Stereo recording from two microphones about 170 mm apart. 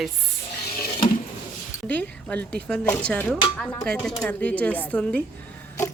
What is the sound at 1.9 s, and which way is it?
Speech, 10° left (ahead or behind).